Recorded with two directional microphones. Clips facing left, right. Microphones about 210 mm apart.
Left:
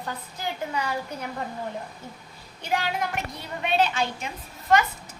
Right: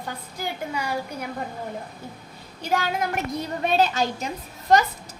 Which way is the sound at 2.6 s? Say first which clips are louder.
Right 2 dB; 45° right (ahead or behind).